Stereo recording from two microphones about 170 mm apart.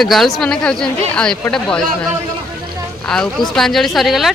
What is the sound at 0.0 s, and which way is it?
Speech, centre (ahead or behind).